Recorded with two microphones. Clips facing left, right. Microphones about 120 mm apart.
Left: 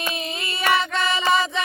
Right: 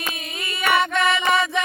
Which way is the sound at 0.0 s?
30° left (ahead or behind).